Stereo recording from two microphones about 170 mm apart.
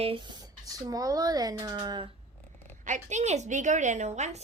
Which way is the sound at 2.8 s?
45° right (ahead or behind).